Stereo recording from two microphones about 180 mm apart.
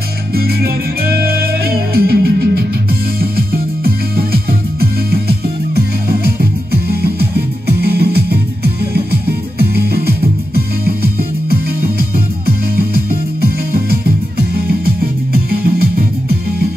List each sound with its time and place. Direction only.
0.3 s music: 60° right (ahead or behind)